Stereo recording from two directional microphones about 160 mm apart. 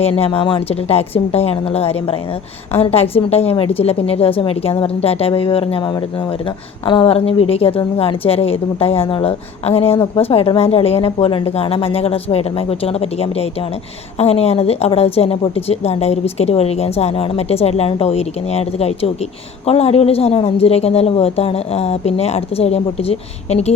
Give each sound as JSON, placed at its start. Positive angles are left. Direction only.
{"t": 0.0, "sound": "a woman's voice", "side_deg": 35}